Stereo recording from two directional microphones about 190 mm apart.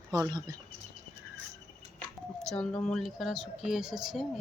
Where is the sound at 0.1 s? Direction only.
20° right (ahead or behind).